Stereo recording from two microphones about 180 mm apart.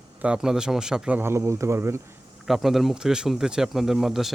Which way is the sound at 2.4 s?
Centre (ahead or behind).